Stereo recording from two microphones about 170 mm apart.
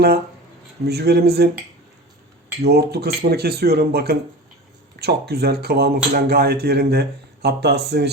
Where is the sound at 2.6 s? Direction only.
70° right (ahead or behind).